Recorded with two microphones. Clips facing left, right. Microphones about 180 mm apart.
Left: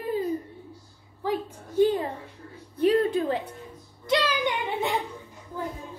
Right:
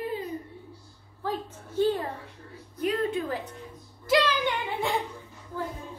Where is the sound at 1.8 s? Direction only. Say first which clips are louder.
Left 3 dB; 15° left (ahead or behind).